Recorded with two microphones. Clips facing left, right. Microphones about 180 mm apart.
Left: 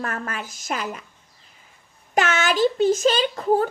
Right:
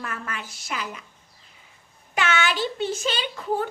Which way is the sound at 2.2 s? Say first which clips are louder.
Left 5 dB; 40° left (ahead or behind).